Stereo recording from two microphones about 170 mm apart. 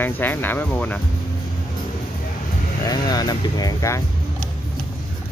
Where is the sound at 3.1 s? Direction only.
25° left (ahead or behind).